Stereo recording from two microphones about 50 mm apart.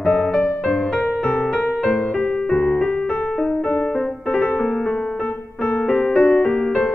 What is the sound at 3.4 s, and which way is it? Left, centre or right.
Music, centre.